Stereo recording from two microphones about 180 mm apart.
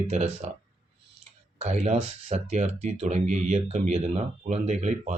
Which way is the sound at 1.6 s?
40° right (ahead or behind).